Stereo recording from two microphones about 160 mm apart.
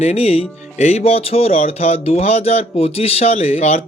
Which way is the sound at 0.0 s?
40° left (ahead or behind).